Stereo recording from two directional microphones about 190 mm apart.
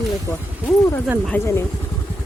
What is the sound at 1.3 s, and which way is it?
Speech, 10° left (ahead or behind).